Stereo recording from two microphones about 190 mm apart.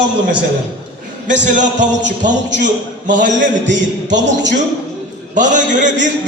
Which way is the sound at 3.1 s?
40° right (ahead or behind).